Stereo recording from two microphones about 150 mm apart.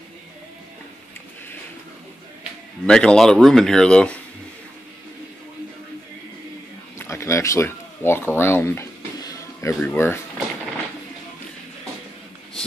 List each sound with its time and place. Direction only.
2.9 s speech: 5° left (ahead or behind)
7.0 s a sound: 20° left (ahead or behind)
9.8 s speech: 10° left (ahead or behind)